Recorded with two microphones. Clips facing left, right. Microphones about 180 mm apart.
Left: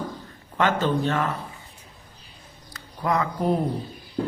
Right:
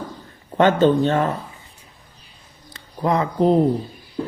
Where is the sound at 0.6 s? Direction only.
25° right (ahead or behind).